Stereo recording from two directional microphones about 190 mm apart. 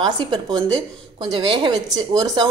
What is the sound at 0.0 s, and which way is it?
Speech, 25° right (ahead or behind).